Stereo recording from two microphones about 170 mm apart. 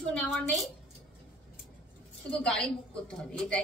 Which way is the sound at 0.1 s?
5° left (ahead or behind).